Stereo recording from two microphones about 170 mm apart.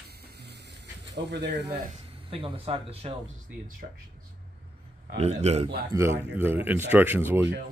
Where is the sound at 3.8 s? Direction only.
50° right (ahead or behind).